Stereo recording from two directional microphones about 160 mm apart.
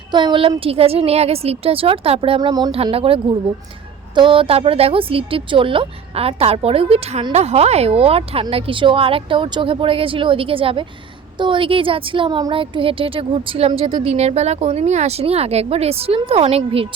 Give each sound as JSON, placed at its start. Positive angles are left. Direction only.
{"t": 0.1, "sound": "a woman's voice", "side_deg": -30}
{"t": 2.7, "sound": "a woman's voice", "side_deg": -35}